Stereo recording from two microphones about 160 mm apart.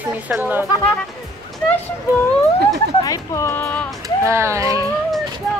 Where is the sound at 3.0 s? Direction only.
20° left (ahead or behind).